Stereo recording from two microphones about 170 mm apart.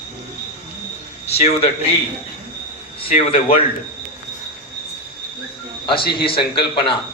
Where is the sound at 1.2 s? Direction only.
40° left (ahead or behind).